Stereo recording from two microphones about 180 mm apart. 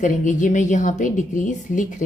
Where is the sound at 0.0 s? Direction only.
45° left (ahead or behind).